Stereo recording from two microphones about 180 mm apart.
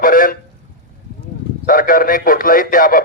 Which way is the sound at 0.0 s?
50° left (ahead or behind).